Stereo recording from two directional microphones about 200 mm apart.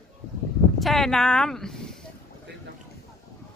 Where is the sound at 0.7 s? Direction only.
Centre (ahead or behind).